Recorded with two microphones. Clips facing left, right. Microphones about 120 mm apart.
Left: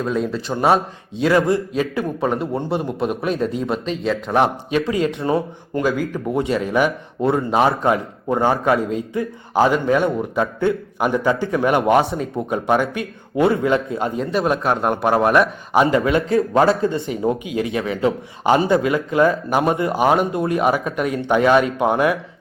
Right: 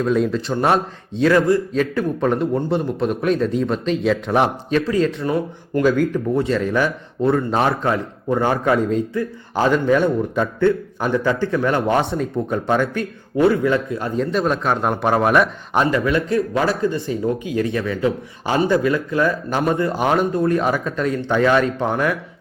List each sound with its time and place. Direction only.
0.0 s a man's voice: centre (ahead or behind)
4.7 s speech: 10° left (ahead or behind)
5.2 s a man's voice: 25° left (ahead or behind)
5.8 s speech: 10° left (ahead or behind)
6.3 s a man's voice: 20° left (ahead or behind)
13.4 s a man's voice: 25° left (ahead or behind)
14.2 s a man's voice: 10° left (ahead or behind)
15.9 s a man's voice: 20° left (ahead or behind)